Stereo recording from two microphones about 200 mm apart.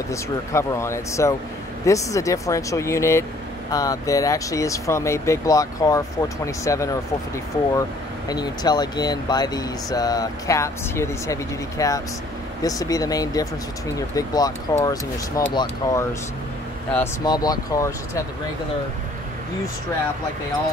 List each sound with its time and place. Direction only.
0.1 s speech: 15° left (ahead or behind)
8.3 s speech: 20° left (ahead or behind)